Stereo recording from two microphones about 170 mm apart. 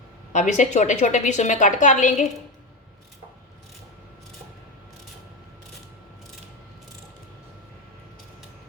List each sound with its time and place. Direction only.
0.3 s a woman's voice: 45° left (ahead or behind)